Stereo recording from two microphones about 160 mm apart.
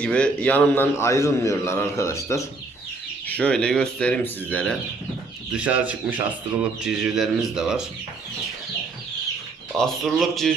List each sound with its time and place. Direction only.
0.0 s a man's voice: 5° left (ahead or behind)
3.2 s a man's voice: 10° left (ahead or behind)
5.5 s a man's voice: 10° right (ahead or behind)
9.7 s speech: centre (ahead or behind)